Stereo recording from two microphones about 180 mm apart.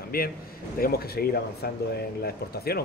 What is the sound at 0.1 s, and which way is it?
Speech, 55° left (ahead or behind).